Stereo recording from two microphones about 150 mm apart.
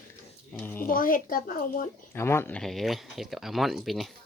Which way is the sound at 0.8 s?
70° left (ahead or behind).